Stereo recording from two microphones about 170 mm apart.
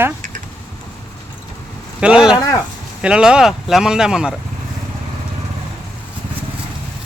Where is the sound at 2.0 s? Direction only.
5° right (ahead or behind).